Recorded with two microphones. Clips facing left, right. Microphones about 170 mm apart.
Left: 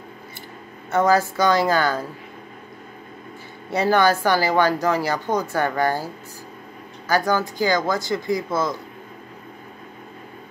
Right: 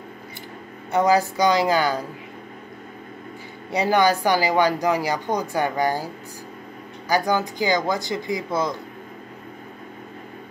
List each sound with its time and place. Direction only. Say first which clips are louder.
0.9 s speech: even; 15° right (ahead or behind)
3.7 s speech: left 1 dB; 15° right (ahead or behind)
7.1 s speech: left 1 dB; 20° right (ahead or behind)